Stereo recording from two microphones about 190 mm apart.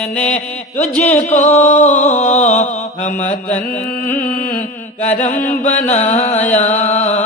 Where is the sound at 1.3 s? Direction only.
40° left (ahead or behind).